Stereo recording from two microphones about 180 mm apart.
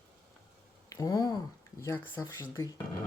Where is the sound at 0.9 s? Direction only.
20° left (ahead or behind).